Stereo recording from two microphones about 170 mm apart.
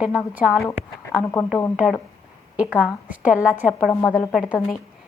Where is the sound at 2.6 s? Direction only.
5° right (ahead or behind).